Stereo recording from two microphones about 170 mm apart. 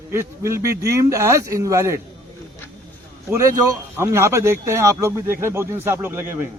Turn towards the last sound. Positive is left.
turn(degrees=-15)  # may be behind; listen again after turning